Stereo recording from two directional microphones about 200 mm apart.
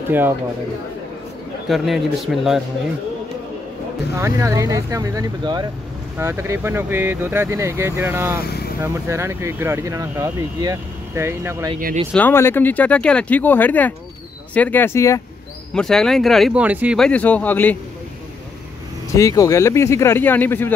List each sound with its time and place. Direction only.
1.7 s speech: centre (ahead or behind)
4.2 s speech: 15° right (ahead or behind)
8.5 s vehicle: 50° left (ahead or behind)
8.8 s speech: 15° right (ahead or behind)
11.8 s speech: 35° right (ahead or behind)
12.1 s speech: 10° left (ahead or behind)
15.7 s speech: 5° left (ahead or behind)
19.1 s speech: 15° left (ahead or behind)